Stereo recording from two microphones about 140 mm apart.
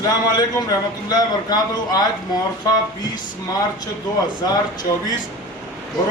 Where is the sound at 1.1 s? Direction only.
30° left (ahead or behind).